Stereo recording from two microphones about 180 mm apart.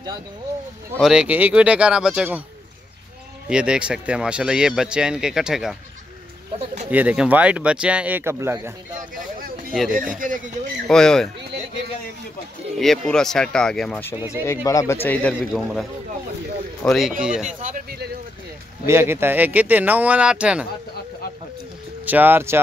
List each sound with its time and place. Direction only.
0.9 s speech: 5° right (ahead or behind)
3.4 s speech: 5° right (ahead or behind)
6.9 s speech: 10° right (ahead or behind)
9.8 s speech: 50° right (ahead or behind)
10.9 s speech: 5° left (ahead or behind)
12.7 s speech: centre (ahead or behind); by 15.0 s 20° left (ahead or behind)
15.0 s speech: 5° left (ahead or behind)
17.6 s a sound: 45° right (ahead or behind)
18.9 s speech: 15° right (ahead or behind)
22.0 s speech: 10° right (ahead or behind)